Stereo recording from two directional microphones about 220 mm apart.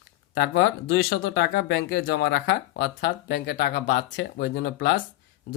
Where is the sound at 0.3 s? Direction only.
55° left (ahead or behind).